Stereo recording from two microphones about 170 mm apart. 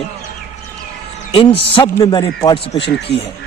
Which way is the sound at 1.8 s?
20° left (ahead or behind).